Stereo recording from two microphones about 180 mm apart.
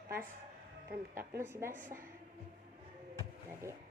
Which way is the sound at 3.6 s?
15° right (ahead or behind).